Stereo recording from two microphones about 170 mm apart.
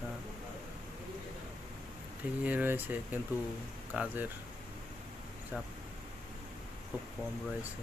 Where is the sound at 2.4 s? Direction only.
10° right (ahead or behind).